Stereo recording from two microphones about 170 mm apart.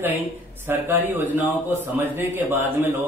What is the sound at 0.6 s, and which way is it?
A man's voice, 10° right (ahead or behind).